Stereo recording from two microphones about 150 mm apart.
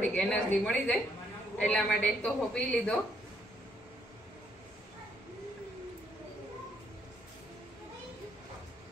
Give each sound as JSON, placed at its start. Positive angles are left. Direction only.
{"t": 0.0, "sound": "a woman's voice", "side_deg": 5}